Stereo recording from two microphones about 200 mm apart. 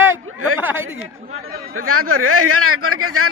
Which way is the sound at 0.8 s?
90° right.